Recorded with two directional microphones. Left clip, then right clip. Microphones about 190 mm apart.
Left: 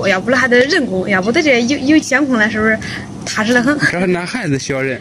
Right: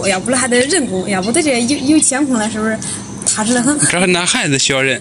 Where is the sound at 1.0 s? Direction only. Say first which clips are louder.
Left 3 dB; 25° left (ahead or behind).